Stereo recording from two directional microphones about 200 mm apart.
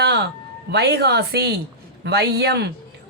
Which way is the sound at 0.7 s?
55° right (ahead or behind).